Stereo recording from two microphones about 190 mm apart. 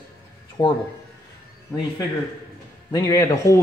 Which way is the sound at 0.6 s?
20° left (ahead or behind).